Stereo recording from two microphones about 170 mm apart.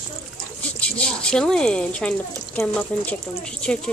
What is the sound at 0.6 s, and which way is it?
Speech, 5° left (ahead or behind).